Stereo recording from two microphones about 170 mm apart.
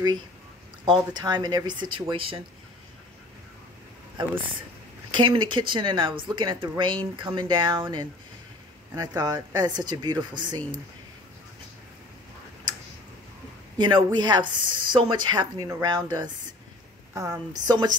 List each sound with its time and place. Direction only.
0.8 s speech: 25° right (ahead or behind)
5.1 s speech: 25° right (ahead or behind)
13.7 s speech: 25° right (ahead or behind)